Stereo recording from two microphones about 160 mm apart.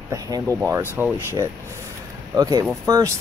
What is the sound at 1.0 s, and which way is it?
Speech, 5° right (ahead or behind).